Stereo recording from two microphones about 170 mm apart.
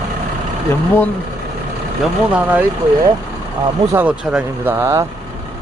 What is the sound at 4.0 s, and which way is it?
A man's voice, 5° right (ahead or behind).